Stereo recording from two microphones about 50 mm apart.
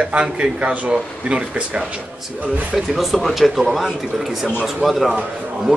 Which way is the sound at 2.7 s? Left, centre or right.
Centre.